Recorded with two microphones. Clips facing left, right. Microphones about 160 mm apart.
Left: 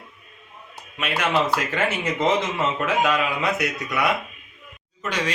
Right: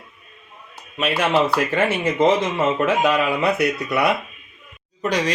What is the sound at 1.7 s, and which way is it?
Speech, 30° right (ahead or behind).